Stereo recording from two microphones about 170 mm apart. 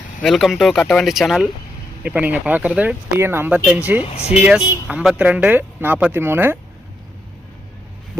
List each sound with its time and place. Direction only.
0.2 s speech: centre (ahead or behind)
4.0 s speech: 35° left (ahead or behind)
4.4 s speech: 5° right (ahead or behind)